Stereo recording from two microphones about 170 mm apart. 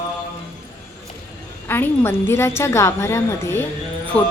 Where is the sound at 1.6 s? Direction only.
15° left (ahead or behind).